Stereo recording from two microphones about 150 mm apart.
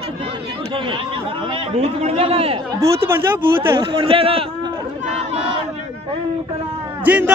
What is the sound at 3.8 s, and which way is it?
Speech, 35° right (ahead or behind).